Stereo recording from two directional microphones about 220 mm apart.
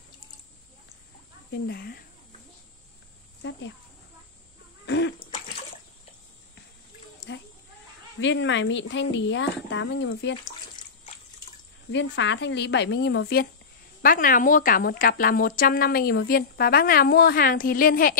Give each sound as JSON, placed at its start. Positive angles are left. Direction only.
{"t": 1.5, "sound": "speech", "side_deg": 45}
{"t": 3.4, "sound": "speech", "side_deg": 55}
{"t": 4.8, "sound": "a sound", "side_deg": 55}
{"t": 7.3, "sound": "goat", "side_deg": 55}
{"t": 8.2, "sound": "speech", "side_deg": 55}
{"t": 10.8, "sound": "bathtub", "side_deg": 20}
{"t": 11.9, "sound": "speech", "side_deg": 55}
{"t": 14.0, "sound": "speech", "side_deg": 40}